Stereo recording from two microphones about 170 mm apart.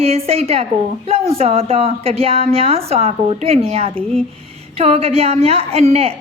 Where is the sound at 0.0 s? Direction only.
35° right (ahead or behind).